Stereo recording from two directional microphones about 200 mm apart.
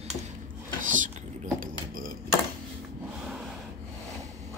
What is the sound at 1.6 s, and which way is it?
Mechanisms, 45° right (ahead or behind).